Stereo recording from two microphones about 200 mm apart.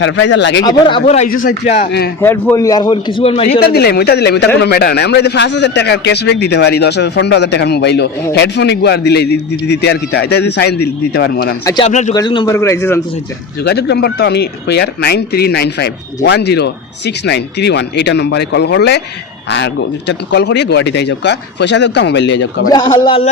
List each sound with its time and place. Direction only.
0.0 s speech: 65° left (ahead or behind)
0.6 s a man's voice: 20° left (ahead or behind)
2.2 s a man's voice: 10° left (ahead or behind); by 3.6 s 30° left (ahead or behind)
3.6 s speech: 50° left (ahead or behind)
11.6 s a man's voice: 20° left (ahead or behind)
11.9 s speech: 35° left (ahead or behind)
12.1 s a man's voice: 25° left (ahead or behind)
13.7 s speech: 55° left (ahead or behind)
22.7 s a man's voice: 20° left (ahead or behind)